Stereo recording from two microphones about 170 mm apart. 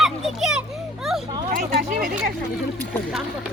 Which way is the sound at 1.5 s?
60° right (ahead or behind).